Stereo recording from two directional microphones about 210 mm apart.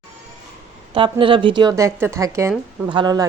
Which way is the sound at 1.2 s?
25° right (ahead or behind).